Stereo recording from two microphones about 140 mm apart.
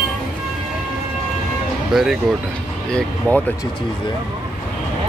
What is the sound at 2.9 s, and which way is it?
Speech, 10° left (ahead or behind).